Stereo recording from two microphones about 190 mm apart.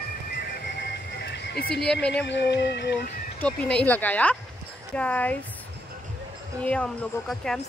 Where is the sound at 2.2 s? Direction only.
65° left (ahead or behind).